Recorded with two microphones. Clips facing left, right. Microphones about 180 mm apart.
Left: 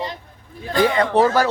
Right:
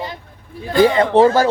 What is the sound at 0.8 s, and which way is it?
Speech, 25° right (ahead or behind).